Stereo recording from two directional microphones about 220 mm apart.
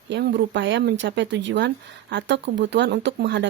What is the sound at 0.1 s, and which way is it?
Speech, 50° right (ahead or behind).